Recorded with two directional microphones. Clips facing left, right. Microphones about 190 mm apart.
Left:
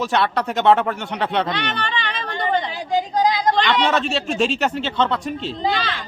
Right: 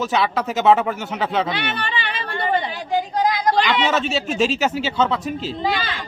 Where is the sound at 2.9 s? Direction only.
20° left (ahead or behind).